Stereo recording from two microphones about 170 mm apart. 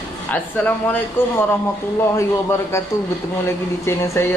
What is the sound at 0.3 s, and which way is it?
Speech, 10° left (ahead or behind).